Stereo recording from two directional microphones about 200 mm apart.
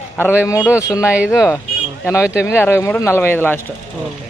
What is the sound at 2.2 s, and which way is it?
Speech, 5° right (ahead or behind).